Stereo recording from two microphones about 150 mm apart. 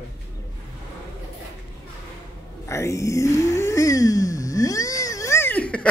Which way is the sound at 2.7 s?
20° left (ahead or behind).